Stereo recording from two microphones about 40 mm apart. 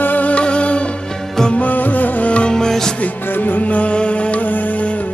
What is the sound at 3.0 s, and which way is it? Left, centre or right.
Music, left.